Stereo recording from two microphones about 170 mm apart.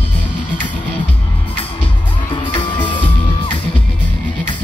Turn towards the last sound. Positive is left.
turn(degrees=30)  # may be behind; listen again after turning